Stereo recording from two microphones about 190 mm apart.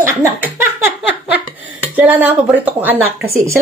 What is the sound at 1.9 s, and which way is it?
Speech, 10° right (ahead or behind).